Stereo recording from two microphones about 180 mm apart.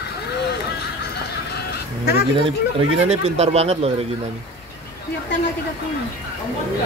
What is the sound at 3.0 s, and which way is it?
Speech, 35° right (ahead or behind).